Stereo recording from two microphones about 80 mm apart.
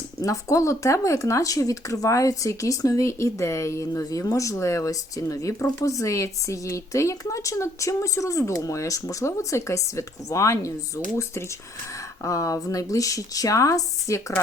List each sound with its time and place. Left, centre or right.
0.2 s speech: left